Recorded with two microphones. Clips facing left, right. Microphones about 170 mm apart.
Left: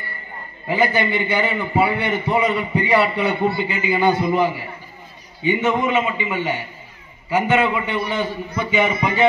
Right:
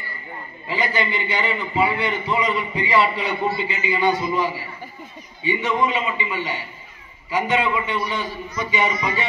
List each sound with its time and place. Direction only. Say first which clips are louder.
0.7 s a man's voice: left 5 dB; 55° left (ahead or behind)